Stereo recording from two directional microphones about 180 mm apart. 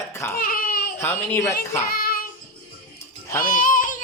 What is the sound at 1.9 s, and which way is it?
Child singing, 55° left (ahead or behind).